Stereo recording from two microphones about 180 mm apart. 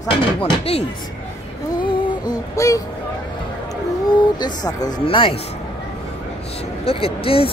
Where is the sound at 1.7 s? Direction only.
25° left (ahead or behind).